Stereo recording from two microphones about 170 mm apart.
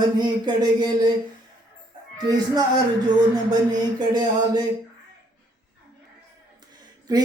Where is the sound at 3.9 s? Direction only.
25° right (ahead or behind).